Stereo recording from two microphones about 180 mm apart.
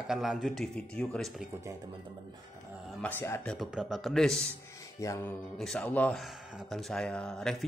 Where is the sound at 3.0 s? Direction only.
10° left (ahead or behind).